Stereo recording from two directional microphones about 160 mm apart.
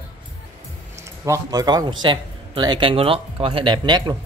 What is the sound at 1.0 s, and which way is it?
A man's voice, 20° right (ahead or behind).